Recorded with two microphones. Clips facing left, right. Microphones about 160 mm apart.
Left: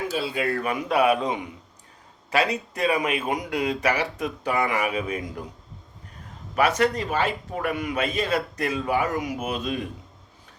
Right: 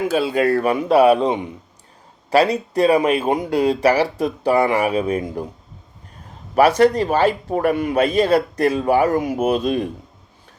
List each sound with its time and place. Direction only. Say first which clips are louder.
0.1 s speech: right 9 dB; 50° right (ahead or behind); by 5.5 s 30° right (ahead or behind)
6.6 s speech: right 8 dB; 35° right (ahead or behind)